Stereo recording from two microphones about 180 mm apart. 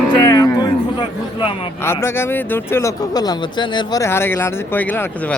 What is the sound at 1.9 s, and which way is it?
Speech, 15° left (ahead or behind).